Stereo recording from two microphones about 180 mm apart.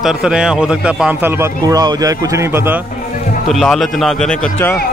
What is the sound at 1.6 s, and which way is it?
Speech, 20° right (ahead or behind).